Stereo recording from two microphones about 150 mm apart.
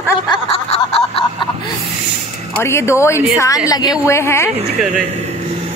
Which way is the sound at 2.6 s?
15° left (ahead or behind).